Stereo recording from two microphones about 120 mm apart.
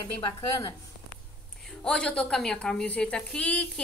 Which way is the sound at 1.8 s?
10° left (ahead or behind).